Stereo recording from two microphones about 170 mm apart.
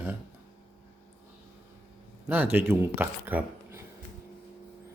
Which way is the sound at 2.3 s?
10° right (ahead or behind).